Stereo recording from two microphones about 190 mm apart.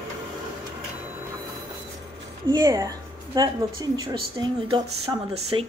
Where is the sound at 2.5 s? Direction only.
20° right (ahead or behind).